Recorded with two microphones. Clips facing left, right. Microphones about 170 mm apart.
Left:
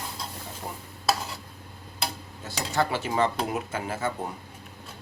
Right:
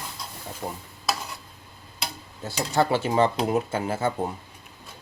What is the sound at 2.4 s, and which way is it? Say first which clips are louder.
Cutlery: right 4 dB; 30° right (ahead or behind).